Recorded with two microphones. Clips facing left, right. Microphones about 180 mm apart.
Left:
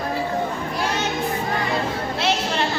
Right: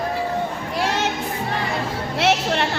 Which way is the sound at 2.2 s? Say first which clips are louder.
Right 4 dB; 65° right (ahead or behind).